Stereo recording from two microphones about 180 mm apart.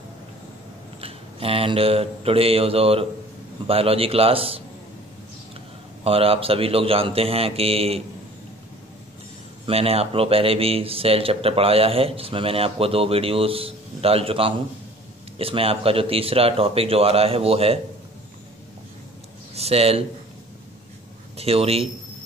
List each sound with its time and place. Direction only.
1.0 s mantra: 30° right (ahead or behind)
3.6 s a man's voice: 30° right (ahead or behind)
6.0 s a man's voice: 30° right (ahead or behind)
9.7 s a man's voice: 35° right (ahead or behind)
19.5 s speech: 35° right (ahead or behind)
21.4 s a man's voice: 35° right (ahead or behind)